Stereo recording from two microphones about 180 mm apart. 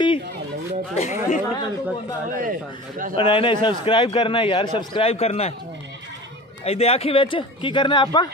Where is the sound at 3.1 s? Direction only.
30° left (ahead or behind).